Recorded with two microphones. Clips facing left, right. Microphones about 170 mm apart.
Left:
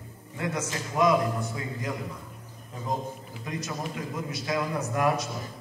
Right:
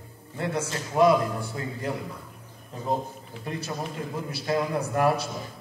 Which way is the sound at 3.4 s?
30° right (ahead or behind).